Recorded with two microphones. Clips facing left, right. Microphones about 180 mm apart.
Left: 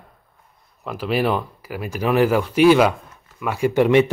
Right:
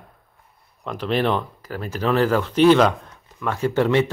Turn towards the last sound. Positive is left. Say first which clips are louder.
# left 3 dB
turn(degrees=15)  # may be behind; listen again after turning